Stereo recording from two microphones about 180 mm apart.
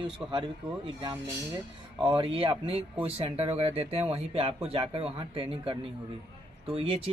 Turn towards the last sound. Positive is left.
turn(degrees=-35)  # may be behind; listen again after turning